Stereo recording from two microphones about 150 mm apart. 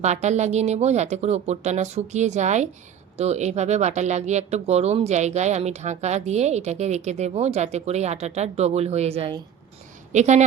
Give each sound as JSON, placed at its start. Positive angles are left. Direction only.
{"t": 0.0, "sound": "speech", "side_deg": -50}
{"t": 10.1, "sound": "speech", "side_deg": -50}